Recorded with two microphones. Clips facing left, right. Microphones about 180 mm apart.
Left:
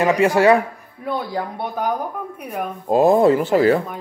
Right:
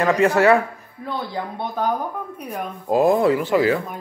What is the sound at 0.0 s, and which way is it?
Speech, 10° left (ahead or behind).